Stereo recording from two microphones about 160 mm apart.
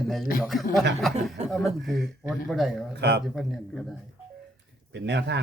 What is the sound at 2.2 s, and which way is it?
Speech, centre (ahead or behind).